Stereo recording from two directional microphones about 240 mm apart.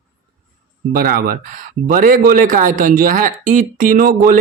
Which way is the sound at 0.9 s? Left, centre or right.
Right.